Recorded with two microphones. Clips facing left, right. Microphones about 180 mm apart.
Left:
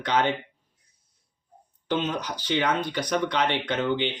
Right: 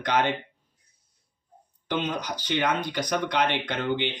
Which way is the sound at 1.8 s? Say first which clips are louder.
Left 1 dB; 15° right (ahead or behind).